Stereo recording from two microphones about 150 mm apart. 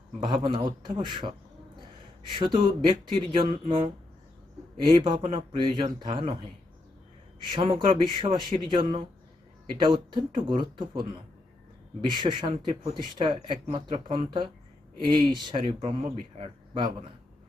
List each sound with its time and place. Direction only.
0.2 s speech: 35° right (ahead or behind)
2.3 s speech: 35° right (ahead or behind)
4.9 s speech: 30° right (ahead or behind)
7.5 s speech: 35° right (ahead or behind)
12.1 s speech: 30° right (ahead or behind)